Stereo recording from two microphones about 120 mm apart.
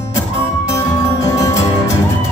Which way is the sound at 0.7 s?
25° left (ahead or behind).